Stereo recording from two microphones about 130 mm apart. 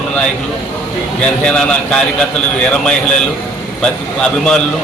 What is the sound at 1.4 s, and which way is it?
A man's voice, 5° left (ahead or behind).